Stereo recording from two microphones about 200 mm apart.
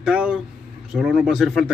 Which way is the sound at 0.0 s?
5° right (ahead or behind).